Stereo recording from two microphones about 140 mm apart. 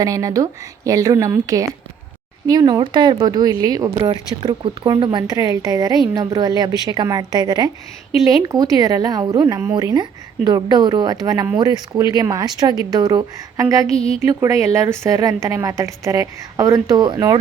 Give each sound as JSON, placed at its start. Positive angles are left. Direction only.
{"t": 0.0, "sound": "speech", "side_deg": -25}